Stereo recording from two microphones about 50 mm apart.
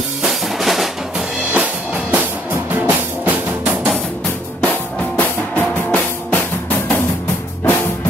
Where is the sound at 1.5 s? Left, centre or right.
Right.